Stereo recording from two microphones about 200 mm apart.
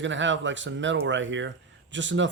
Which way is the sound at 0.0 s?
65° right (ahead or behind).